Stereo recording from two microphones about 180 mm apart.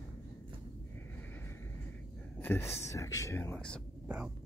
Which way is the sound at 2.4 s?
15° left (ahead or behind).